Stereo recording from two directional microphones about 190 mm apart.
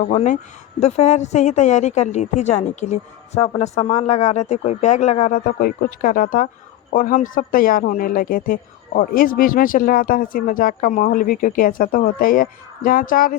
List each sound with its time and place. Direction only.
0.0 s a woman's voice: 40° left (ahead or behind)